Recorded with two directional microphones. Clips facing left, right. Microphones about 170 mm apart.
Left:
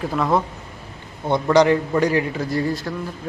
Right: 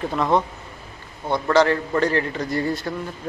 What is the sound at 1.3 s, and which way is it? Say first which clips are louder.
A man's voice: left 3 dB; 15° left (ahead or behind).